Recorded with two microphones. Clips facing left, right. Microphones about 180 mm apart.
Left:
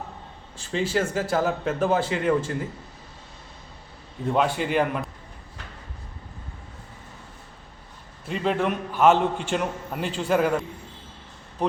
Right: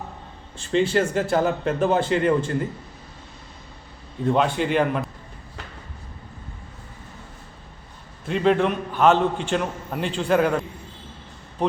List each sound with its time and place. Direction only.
0.6 s speech: 5° left (ahead or behind)
4.3 s a man's voice: 5° left (ahead or behind)
8.3 s a man's voice: 5° left (ahead or behind)